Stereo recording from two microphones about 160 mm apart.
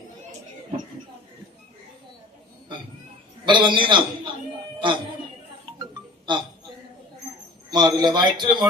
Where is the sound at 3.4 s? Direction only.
30° right (ahead or behind).